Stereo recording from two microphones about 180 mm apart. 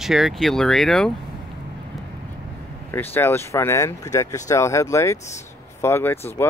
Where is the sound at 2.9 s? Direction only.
10° left (ahead or behind).